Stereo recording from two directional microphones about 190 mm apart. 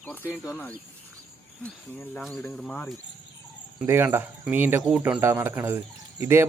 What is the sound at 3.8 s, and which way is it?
Speech, 10° right (ahead or behind).